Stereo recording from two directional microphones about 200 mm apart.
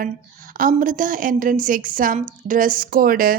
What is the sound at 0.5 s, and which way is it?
A woman's voice, 45° right (ahead or behind).